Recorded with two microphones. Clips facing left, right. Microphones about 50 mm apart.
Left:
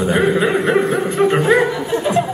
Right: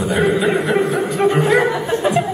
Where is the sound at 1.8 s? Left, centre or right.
Right.